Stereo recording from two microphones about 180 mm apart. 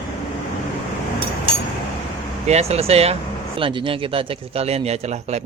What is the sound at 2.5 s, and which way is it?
A man's voice, 35° right (ahead or behind).